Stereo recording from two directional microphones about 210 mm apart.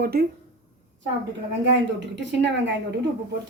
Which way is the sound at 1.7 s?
60° right (ahead or behind).